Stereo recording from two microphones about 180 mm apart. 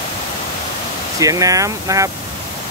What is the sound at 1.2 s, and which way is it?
Speech, 20° right (ahead or behind).